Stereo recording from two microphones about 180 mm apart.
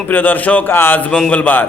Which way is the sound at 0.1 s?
10° left (ahead or behind).